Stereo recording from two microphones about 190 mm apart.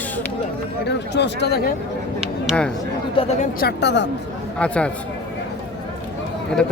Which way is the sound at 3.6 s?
60° left (ahead or behind).